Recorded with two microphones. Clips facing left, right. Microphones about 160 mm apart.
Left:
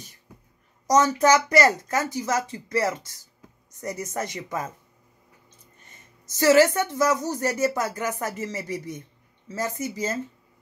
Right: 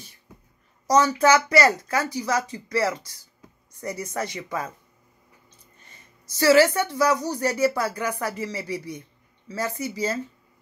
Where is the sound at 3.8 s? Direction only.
45° left (ahead or behind).